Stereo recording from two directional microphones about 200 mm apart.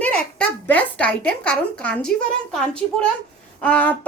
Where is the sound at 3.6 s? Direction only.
5° left (ahead or behind).